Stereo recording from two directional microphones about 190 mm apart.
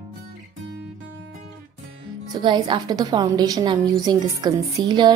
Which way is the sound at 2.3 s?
20° right (ahead or behind).